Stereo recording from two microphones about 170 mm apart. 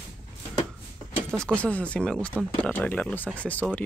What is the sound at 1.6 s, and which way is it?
Speech, 10° left (ahead or behind).